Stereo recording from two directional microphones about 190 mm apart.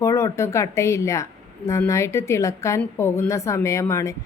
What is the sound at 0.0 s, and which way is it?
A woman's voice, 15° left (ahead or behind).